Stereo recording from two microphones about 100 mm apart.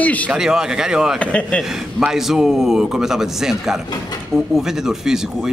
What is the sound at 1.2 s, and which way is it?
Speech, 10° left (ahead or behind).